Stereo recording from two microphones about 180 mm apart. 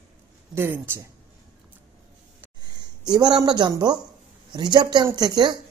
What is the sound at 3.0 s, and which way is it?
A woman's voice, 20° right (ahead or behind).